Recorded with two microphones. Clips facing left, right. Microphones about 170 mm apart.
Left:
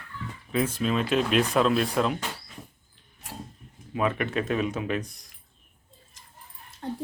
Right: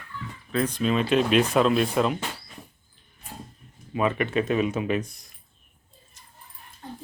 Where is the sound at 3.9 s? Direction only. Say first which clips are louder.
Right 2 dB; centre (ahead or behind).